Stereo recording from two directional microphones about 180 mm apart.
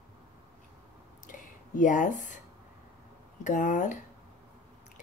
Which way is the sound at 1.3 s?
45° left (ahead or behind).